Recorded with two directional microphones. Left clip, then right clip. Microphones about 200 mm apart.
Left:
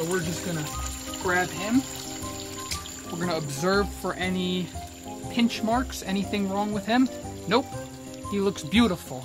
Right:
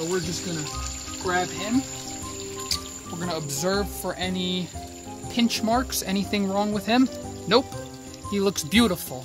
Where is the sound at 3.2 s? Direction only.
10° right (ahead or behind).